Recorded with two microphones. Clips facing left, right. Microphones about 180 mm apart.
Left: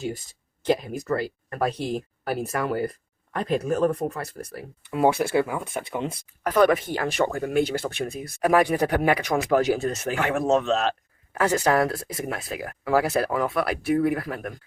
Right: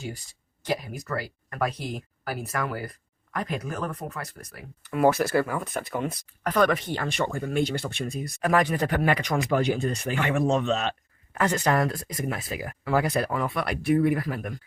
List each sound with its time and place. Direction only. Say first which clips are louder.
0.7 s speech: left 6 dB; 25° left (ahead or behind)
4.9 s speech: even; 15° left (ahead or behind)
6.4 s speech: left 4 dB; 5° left (ahead or behind)